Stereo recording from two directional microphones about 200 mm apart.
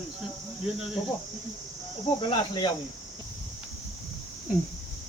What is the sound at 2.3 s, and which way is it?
Speech, 20° left (ahead or behind).